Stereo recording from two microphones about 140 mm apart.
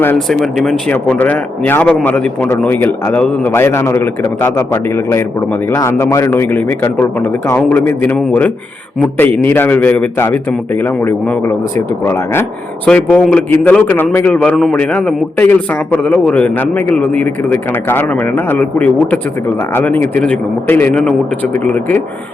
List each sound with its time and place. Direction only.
0.3 s speech: centre (ahead or behind)
0.9 s a man's voice: 10° left (ahead or behind)